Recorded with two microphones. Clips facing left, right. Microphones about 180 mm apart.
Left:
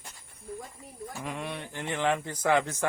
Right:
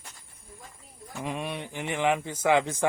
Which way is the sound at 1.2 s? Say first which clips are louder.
Right 4 dB; 20° right (ahead or behind).